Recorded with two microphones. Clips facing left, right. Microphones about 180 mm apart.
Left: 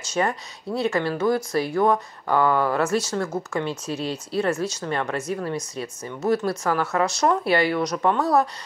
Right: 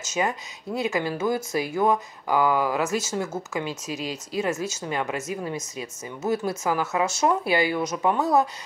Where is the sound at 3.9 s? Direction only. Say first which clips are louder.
Left 3 dB; 35° left (ahead or behind).